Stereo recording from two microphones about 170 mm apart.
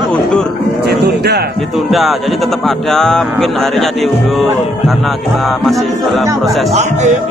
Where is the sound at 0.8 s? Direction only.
75° right (ahead or behind).